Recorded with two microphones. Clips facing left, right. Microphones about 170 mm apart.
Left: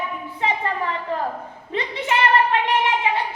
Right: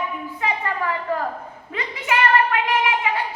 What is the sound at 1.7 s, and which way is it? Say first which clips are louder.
Speech: left 1 dB; 30° left (ahead or behind).